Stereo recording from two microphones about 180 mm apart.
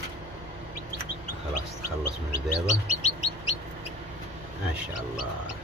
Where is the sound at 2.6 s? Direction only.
40° left (ahead or behind).